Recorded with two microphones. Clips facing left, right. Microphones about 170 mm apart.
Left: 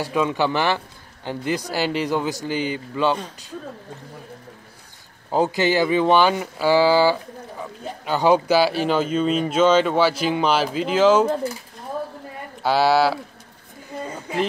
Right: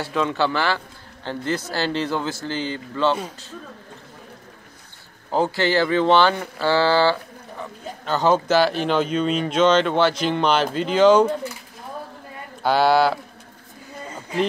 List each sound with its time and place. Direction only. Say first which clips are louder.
0.0 s speech: left 1 dB; 15° left (ahead or behind)
5.3 s speech: left 1 dB; 15° left (ahead or behind)
12.6 s speech: even; 5° left (ahead or behind)